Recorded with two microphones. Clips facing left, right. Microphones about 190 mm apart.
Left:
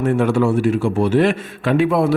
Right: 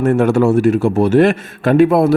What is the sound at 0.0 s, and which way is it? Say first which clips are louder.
A man's voice: right 4 dB; 45° right (ahead or behind).